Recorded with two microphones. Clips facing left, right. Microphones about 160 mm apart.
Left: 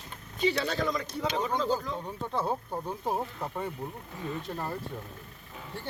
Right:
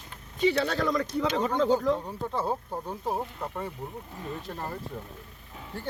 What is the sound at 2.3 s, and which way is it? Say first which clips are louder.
Speech: even; 5° right (ahead or behind).